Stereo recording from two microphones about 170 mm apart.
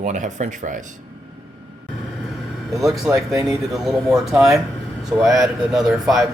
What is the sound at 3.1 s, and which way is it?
Speech, 15° right (ahead or behind).